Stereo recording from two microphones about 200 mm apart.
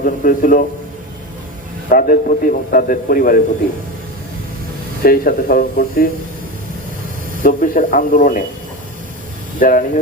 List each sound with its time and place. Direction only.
0.0 s a man's voice: 45° left (ahead or behind)
1.9 s a man's voice: 45° left (ahead or behind)
5.0 s a man's voice: 45° left (ahead or behind)
7.4 s a man's voice: 40° left (ahead or behind)
9.6 s speech: 40° left (ahead or behind)